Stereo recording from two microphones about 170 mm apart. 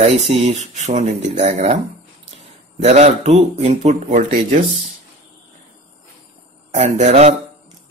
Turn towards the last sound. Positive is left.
turn(degrees=-40)  # may be behind; listen again after turning